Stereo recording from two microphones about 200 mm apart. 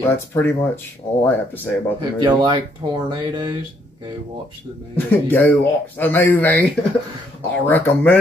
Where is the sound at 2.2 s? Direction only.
20° right (ahead or behind).